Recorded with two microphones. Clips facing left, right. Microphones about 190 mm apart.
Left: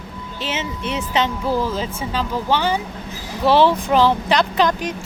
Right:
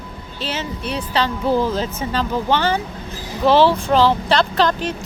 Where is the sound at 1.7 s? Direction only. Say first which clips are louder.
Right 2 dB; 10° left (ahead or behind).